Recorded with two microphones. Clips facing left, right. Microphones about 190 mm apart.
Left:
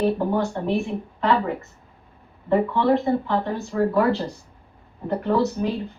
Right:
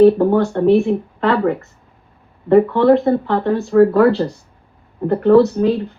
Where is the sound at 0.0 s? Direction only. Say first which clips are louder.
Right 11 dB; 65° right (ahead or behind).